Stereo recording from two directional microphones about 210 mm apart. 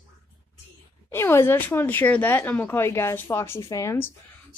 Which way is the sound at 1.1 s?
10° left (ahead or behind).